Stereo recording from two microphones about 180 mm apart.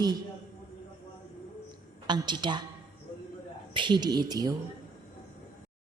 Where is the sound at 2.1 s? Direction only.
25° right (ahead or behind).